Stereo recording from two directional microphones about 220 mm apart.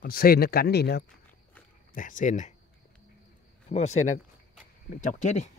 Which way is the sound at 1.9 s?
35° left (ahead or behind).